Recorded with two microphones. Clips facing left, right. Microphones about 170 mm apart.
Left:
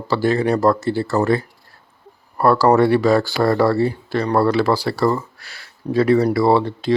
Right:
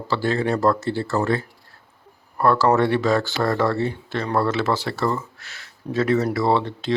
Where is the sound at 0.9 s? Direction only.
40° left (ahead or behind).